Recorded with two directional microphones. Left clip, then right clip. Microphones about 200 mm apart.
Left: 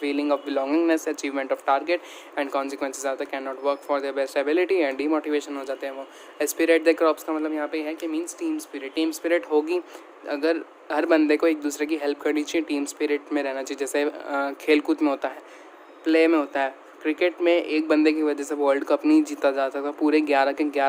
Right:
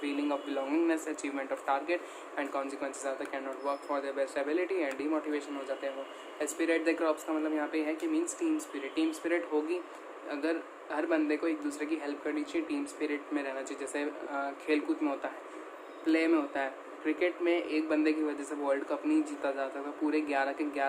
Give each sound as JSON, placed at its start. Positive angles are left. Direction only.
{"t": 0.0, "sound": "a man's voice", "side_deg": 50}